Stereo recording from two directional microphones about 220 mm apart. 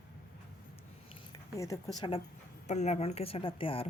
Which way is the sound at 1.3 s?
15° left (ahead or behind).